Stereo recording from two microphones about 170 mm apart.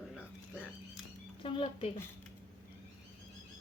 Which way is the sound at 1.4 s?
30° left (ahead or behind).